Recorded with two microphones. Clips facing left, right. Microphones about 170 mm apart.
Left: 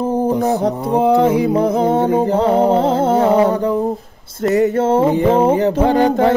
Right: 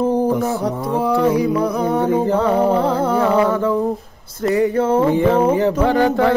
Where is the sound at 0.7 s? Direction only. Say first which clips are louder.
Left 4 dB; 20° left (ahead or behind).